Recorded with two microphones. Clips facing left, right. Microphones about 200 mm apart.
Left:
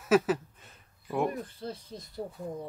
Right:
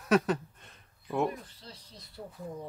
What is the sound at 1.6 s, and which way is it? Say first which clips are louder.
Speech: left 12 dB; 50° left (ahead or behind).